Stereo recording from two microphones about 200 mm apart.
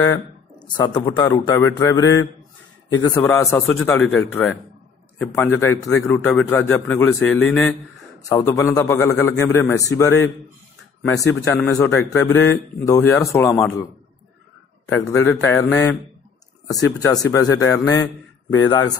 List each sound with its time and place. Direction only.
0.6 s speech: 20° left (ahead or behind); by 7.7 s 5° left (ahead or behind)
8.3 s speech: 15° left (ahead or behind)
11.4 s speech: 10° left (ahead or behind)
13.5 s a man's voice: centre (ahead or behind)
14.9 s speech: 15° left (ahead or behind)
17.0 s speech: 15° left (ahead or behind)